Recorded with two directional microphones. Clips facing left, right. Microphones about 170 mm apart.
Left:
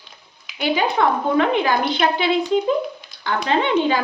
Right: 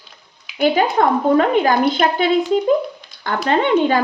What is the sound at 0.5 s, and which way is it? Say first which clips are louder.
A woman's voice: right 4 dB; 45° right (ahead or behind).